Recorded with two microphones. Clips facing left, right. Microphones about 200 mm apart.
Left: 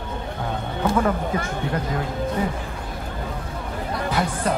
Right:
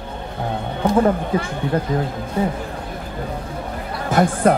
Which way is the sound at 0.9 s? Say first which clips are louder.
Right 6 dB; 30° right (ahead or behind).